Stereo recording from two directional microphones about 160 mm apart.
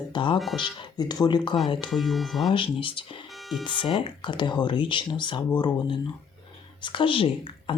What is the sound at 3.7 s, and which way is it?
Speech, 30° left (ahead or behind).